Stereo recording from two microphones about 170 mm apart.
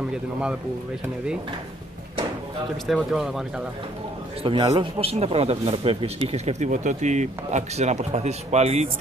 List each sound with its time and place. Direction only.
0.1 s speech: 5° right (ahead or behind)
2.9 s speech: centre (ahead or behind)
4.4 s speech: 30° right (ahead or behind)